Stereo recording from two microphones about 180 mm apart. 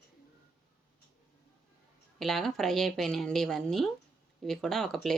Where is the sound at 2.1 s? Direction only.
Centre (ahead or behind).